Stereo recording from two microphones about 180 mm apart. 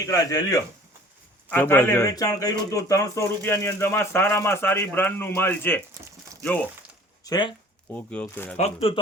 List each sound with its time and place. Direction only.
0.0 s speech: 20° left (ahead or behind)
7.3 s speech: 25° left (ahead or behind)
7.9 s speech: 10° left (ahead or behind)
8.5 s speech: 35° left (ahead or behind)